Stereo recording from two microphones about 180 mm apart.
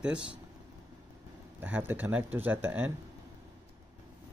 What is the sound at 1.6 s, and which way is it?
Speech, 10° right (ahead or behind).